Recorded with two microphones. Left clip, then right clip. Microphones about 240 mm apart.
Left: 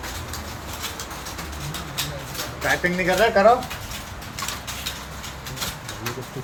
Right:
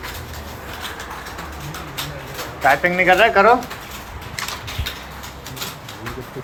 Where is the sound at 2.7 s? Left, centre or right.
Centre.